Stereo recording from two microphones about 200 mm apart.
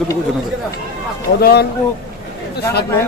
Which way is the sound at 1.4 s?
50° left (ahead or behind).